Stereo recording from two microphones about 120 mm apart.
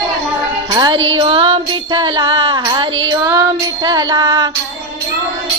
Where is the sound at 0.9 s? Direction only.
50° right (ahead or behind).